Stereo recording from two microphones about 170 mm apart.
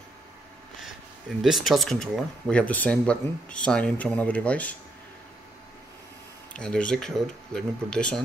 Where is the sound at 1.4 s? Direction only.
Centre (ahead or behind).